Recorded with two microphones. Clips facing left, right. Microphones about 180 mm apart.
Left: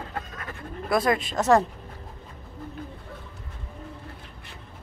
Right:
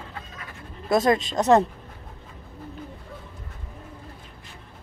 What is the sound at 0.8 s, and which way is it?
Speech, 25° right (ahead or behind).